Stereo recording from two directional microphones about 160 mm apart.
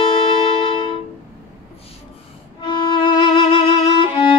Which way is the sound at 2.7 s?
30° left (ahead or behind).